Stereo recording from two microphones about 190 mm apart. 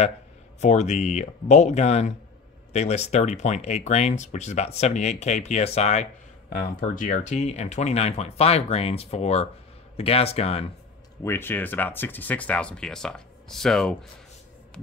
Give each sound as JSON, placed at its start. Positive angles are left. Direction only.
{"t": 0.6, "sound": "speech", "side_deg": 35}
{"t": 11.2, "sound": "speech", "side_deg": 10}